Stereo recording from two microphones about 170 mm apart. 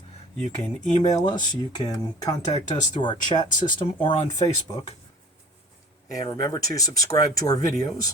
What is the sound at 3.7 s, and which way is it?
Speech, 30° left (ahead or behind).